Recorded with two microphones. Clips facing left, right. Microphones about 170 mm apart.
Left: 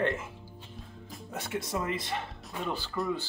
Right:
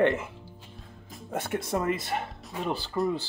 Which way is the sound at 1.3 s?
50° right (ahead or behind).